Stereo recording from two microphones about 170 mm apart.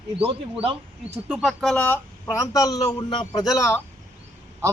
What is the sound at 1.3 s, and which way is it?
Speech, centre (ahead or behind).